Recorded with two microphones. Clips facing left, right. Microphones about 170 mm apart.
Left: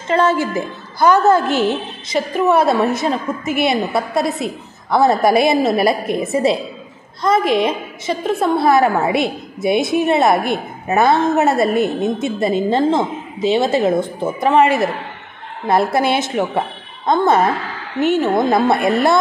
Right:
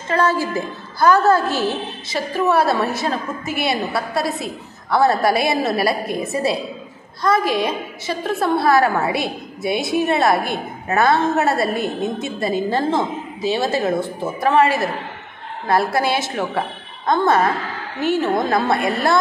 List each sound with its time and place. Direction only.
0.1 s a woman's voice: 20° left (ahead or behind)